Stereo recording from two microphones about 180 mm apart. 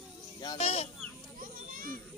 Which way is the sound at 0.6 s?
35° left (ahead or behind).